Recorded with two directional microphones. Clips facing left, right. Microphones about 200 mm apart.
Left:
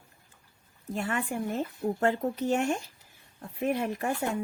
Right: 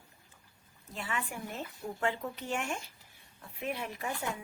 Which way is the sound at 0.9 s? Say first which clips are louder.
Left 8 dB; 50° left (ahead or behind).